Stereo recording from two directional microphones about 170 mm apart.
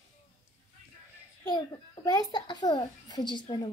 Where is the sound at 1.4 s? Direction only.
25° left (ahead or behind).